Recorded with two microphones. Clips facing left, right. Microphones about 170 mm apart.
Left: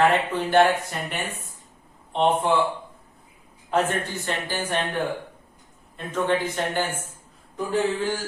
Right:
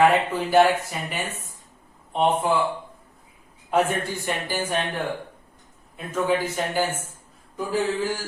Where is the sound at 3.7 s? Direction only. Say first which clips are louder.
Right 1 dB; 10° right (ahead or behind).